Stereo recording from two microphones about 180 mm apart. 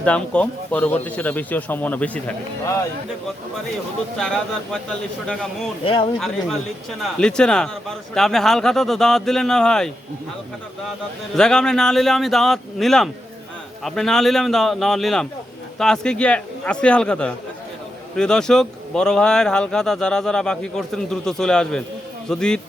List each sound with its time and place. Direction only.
0.0 s a man's voice: 5° left (ahead or behind)
4.2 s speech: 5° left (ahead or behind)
5.8 s speech: 30° left (ahead or behind)
6.1 s speech: centre (ahead or behind)
11.3 s speech: 5° left (ahead or behind)